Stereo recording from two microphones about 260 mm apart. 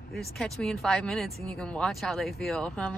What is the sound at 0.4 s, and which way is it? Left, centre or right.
A woman's voice, centre.